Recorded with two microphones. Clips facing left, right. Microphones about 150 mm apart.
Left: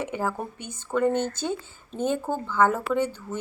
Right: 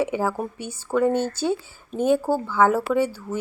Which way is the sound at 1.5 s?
10° right (ahead or behind).